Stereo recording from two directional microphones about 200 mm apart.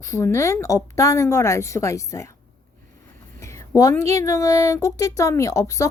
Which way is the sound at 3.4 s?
15° left (ahead or behind).